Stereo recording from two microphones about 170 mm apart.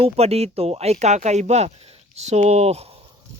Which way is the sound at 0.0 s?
35° right (ahead or behind).